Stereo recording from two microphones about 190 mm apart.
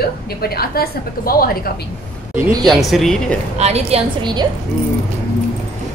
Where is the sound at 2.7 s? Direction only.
Centre (ahead or behind).